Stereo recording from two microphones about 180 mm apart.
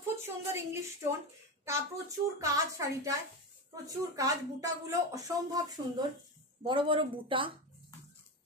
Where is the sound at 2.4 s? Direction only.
15° right (ahead or behind).